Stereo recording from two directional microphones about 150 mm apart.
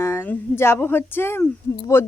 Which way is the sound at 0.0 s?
15° left (ahead or behind).